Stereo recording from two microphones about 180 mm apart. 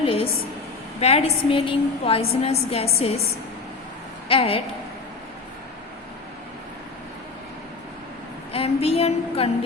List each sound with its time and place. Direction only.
0.0 s a sound: 30° left (ahead or behind)
0.9 s a woman's voice: 35° left (ahead or behind)
4.3 s a woman's voice: 30° left (ahead or behind)
8.5 s a woman's voice: 35° left (ahead or behind)